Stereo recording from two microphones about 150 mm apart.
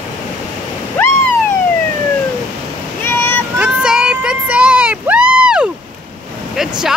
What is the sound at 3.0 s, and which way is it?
Boat, 15° left (ahead or behind).